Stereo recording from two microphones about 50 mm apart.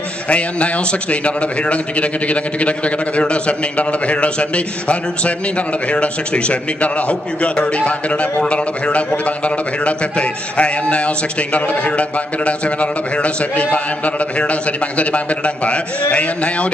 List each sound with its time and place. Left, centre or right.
0.3 s a man's voice: left